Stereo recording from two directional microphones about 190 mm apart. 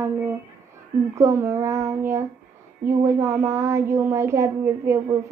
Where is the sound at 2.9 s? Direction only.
15° right (ahead or behind).